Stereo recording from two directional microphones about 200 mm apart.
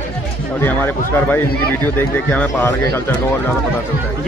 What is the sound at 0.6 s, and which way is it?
Speech, 10° left (ahead or behind).